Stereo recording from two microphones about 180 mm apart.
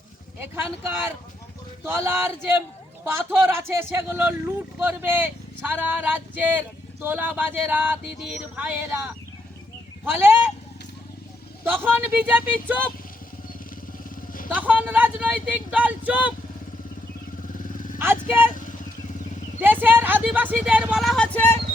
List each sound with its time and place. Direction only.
0.5 s speech: 10° right (ahead or behind)
11.6 s speech: 10° right (ahead or behind)
14.5 s speech: 10° right (ahead or behind)
17.6 s vehicle: 50° left (ahead or behind)
18.0 s speech: 10° right (ahead or behind)
19.6 s speech: 10° right (ahead or behind); by 21.5 s 5° left (ahead or behind)